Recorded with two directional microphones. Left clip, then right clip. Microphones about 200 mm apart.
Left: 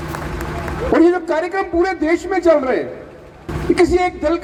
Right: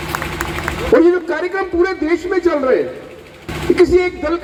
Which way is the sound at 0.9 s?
60° left (ahead or behind).